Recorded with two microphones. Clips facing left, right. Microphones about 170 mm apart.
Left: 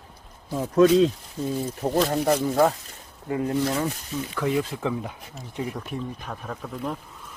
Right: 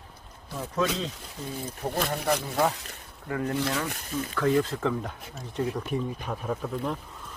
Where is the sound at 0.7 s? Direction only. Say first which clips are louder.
Left 12 dB; 55° left (ahead or behind).